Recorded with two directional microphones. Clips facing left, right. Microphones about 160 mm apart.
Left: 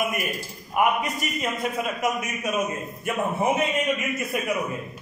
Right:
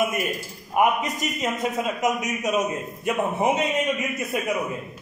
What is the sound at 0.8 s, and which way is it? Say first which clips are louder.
A man's voice: right 2 dB; 20° right (ahead or behind).